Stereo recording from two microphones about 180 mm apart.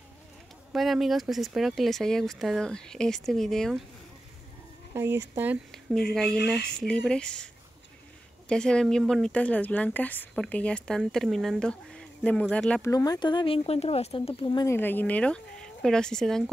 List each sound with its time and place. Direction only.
0.7 s speech: centre (ahead or behind)
4.9 s speech: 15° right (ahead or behind)
5.7 s speech: centre (ahead or behind)
8.5 s speech: 5° left (ahead or behind)
12.9 s speech: 20° left (ahead or behind); by 16.4 s 5° left (ahead or behind)